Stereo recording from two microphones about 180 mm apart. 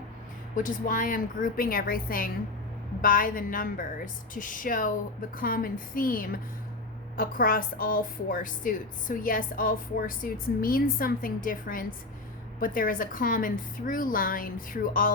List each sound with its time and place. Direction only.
0.5 s a woman's voice: 50° left (ahead or behind)